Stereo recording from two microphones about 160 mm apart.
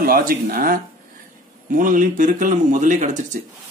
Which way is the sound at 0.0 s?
65° right (ahead or behind).